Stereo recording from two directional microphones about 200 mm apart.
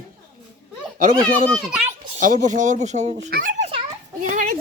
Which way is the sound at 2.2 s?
40° right (ahead or behind).